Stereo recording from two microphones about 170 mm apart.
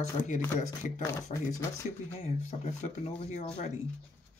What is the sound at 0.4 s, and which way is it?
Speech, 15° left (ahead or behind).